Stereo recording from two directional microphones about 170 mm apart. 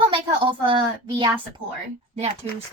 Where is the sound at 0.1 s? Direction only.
30° right (ahead or behind).